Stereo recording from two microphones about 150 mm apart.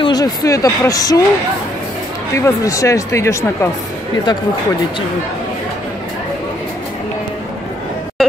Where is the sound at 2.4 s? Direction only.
20° left (ahead or behind).